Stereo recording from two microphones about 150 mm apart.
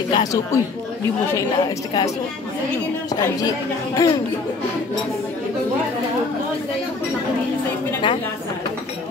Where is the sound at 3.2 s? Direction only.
20° left (ahead or behind).